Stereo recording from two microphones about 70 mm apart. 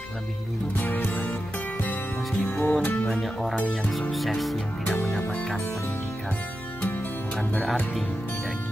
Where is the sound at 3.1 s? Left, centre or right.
Centre.